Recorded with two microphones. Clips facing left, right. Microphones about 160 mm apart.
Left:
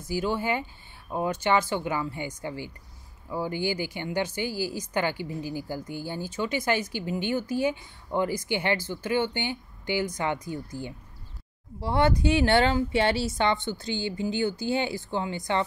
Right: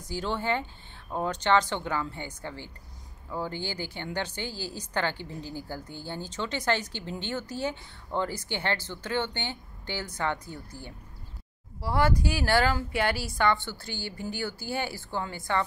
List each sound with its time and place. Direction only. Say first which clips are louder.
0.1 s a woman's voice: left 2 dB; 10° left (ahead or behind)